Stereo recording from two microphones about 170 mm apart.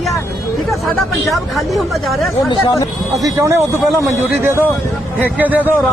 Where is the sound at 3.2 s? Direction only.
20° right (ahead or behind).